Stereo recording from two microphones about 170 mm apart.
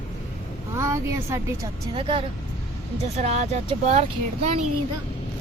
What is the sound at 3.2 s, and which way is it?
Speech, 40° right (ahead or behind).